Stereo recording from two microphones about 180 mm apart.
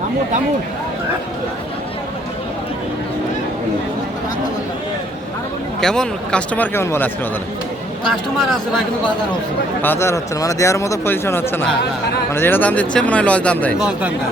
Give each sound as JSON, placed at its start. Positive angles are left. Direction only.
{"t": 5.8, "sound": "speech", "side_deg": 5}
{"t": 8.4, "sound": "a man's voice", "side_deg": 0}
{"t": 9.8, "sound": "speech", "side_deg": 10}